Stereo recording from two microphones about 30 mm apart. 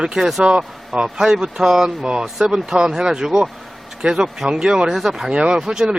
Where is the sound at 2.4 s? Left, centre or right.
Right.